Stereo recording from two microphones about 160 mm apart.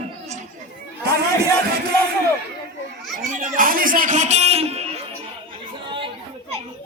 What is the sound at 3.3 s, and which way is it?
Music, 55° right (ahead or behind).